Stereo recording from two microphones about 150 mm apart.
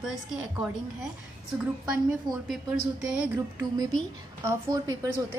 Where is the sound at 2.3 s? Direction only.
25° right (ahead or behind).